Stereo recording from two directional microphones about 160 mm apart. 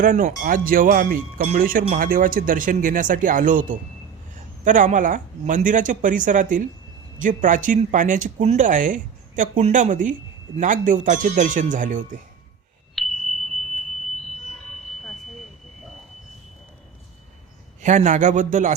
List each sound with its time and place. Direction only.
0.0 s a man's voice: 60° right (ahead or behind)
13.0 s chime: centre (ahead or behind)
17.8 s a man's voice: 50° right (ahead or behind)